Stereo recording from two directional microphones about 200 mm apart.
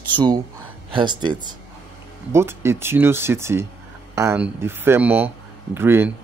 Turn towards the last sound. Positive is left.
turn(degrees=-10)  # may be behind; listen again after turning